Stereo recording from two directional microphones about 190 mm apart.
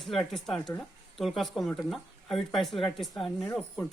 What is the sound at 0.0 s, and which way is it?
A man's voice, centre (ahead or behind).